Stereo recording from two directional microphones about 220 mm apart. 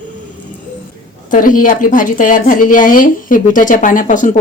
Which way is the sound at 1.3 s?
40° left (ahead or behind).